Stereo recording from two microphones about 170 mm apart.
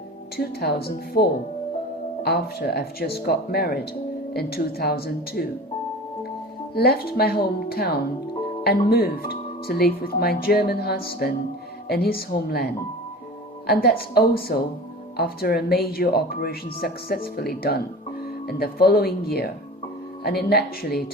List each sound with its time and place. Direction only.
0.3 s speech: 70° left (ahead or behind)
6.7 s speech: 65° left (ahead or behind)
14.1 s speech: 65° left (ahead or behind)